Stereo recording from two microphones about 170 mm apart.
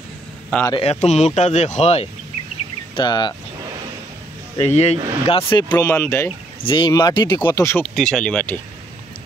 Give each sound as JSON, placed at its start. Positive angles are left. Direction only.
{"t": 0.7, "sound": "speech", "side_deg": 35}
{"t": 3.0, "sound": "speech", "side_deg": 25}
{"t": 4.6, "sound": "speech", "side_deg": 40}
{"t": 5.5, "sound": "speech", "side_deg": 20}
{"t": 6.6, "sound": "speech", "side_deg": 30}
{"t": 7.8, "sound": "speech", "side_deg": 5}